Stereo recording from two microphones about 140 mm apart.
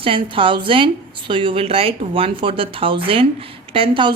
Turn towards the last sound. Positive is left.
turn(degrees=-40)  # may be behind; listen again after turning